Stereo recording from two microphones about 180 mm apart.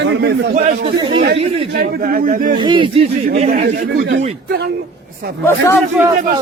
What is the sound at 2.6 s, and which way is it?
Speech, 25° right (ahead or behind).